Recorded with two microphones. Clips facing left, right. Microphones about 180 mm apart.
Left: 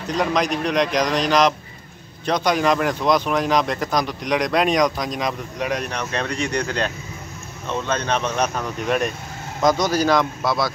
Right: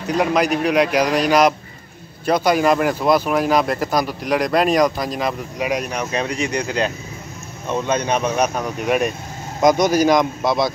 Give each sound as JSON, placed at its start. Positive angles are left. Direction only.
{"t": 0.0, "sound": "speech", "side_deg": -10}